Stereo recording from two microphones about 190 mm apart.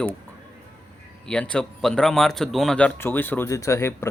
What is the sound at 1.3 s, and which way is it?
Speech, 5° left (ahead or behind).